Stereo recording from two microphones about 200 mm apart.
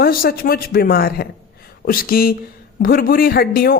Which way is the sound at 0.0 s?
50° left (ahead or behind).